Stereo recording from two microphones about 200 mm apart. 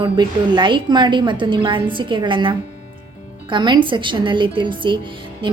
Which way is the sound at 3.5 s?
25° right (ahead or behind).